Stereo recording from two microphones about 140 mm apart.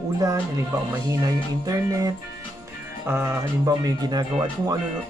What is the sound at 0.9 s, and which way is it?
Speech, 25° right (ahead or behind).